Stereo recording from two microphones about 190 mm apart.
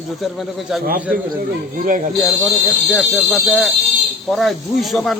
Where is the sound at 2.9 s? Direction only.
Centre (ahead or behind).